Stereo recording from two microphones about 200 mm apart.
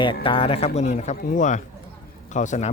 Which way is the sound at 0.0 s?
25° left (ahead or behind).